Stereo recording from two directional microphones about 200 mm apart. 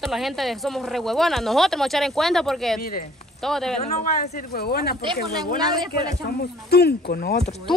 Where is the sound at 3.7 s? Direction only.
35° left (ahead or behind).